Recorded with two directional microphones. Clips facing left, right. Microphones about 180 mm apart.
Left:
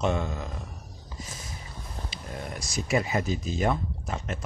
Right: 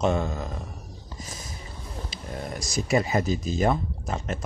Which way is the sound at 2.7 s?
40° right (ahead or behind).